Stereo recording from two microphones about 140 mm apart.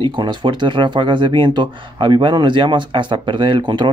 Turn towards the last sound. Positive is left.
turn(degrees=-35)  # may be behind; listen again after turning